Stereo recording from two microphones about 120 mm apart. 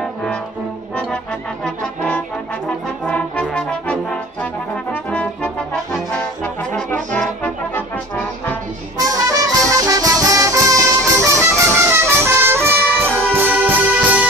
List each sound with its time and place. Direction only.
0.0 s brass instrument: 5° left (ahead or behind)
0.9 s trombone: 10° left (ahead or behind)
3.1 s brass instrument: 10° left (ahead or behind)
5.1 s trombone: 10° left (ahead or behind)
6.4 s brass instrument: 10° left (ahead or behind)
9.1 s music: 30° right (ahead or behind); by 14.2 s 10° right (ahead or behind)